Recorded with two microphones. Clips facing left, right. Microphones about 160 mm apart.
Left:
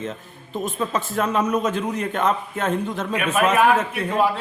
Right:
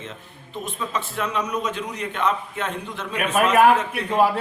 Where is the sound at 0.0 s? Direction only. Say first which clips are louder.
Left 7 dB; 45° left (ahead or behind).